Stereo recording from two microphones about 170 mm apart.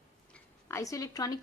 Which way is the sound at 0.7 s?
20° left (ahead or behind).